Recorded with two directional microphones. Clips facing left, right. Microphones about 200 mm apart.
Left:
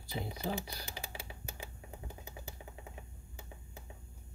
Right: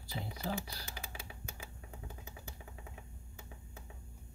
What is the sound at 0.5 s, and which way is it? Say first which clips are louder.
Typing: left 1 dB; 20° left (ahead or behind).